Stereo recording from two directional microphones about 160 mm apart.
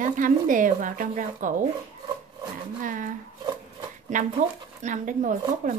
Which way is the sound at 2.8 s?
55° right (ahead or behind).